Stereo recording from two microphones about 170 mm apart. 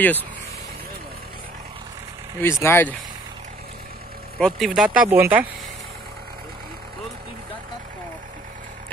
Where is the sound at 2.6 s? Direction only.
10° left (ahead or behind).